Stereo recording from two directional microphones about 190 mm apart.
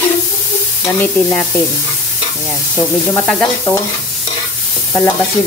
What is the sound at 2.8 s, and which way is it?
Speech, 5° left (ahead or behind).